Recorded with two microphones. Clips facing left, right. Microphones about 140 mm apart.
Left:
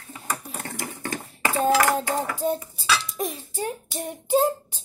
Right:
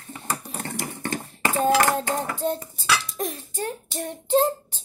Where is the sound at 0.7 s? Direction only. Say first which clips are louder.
Right 2 dB; 25° right (ahead or behind).